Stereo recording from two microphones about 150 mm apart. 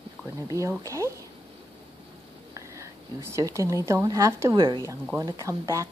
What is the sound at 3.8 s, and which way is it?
Speech, 20° right (ahead or behind).